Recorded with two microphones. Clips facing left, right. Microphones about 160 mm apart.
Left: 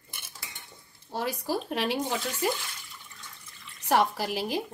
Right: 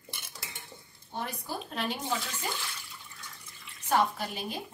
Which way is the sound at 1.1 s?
90° left.